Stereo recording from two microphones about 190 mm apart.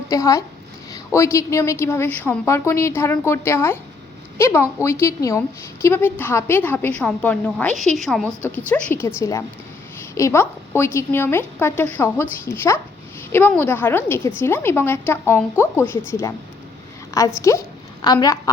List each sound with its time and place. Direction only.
0.1 s a woman's voice: 15° left (ahead or behind)